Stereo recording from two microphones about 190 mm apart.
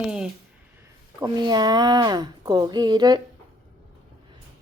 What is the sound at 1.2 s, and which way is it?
Speech, 25° right (ahead or behind).